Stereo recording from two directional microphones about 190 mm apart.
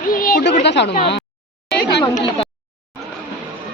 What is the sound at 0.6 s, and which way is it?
Speech, 65° left (ahead or behind).